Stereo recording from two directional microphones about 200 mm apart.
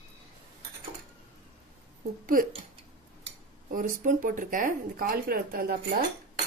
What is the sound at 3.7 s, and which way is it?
Speech, 45° right (ahead or behind).